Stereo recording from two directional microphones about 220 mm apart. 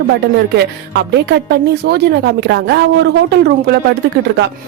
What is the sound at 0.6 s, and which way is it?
A woman's voice, 50° right (ahead or behind).